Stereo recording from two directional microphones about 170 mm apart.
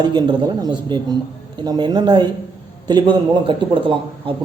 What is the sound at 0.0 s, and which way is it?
A man's voice, 25° right (ahead or behind).